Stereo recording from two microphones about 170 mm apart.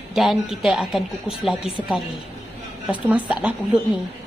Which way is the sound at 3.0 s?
10° right (ahead or behind).